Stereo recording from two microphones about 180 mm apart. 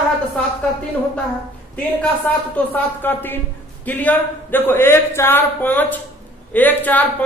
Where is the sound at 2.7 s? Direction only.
10° left (ahead or behind).